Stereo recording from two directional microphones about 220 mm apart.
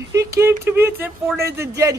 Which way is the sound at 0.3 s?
10° right (ahead or behind).